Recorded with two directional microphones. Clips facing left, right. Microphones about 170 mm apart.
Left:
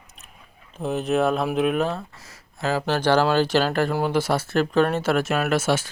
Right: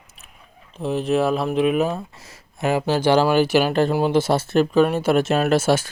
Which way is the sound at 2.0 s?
20° right (ahead or behind).